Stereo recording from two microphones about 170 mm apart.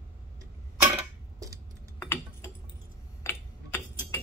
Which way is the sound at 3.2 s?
15° left (ahead or behind).